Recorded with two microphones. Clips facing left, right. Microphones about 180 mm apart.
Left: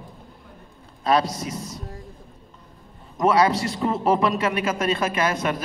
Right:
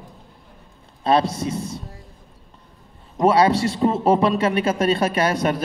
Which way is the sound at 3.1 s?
30° right (ahead or behind).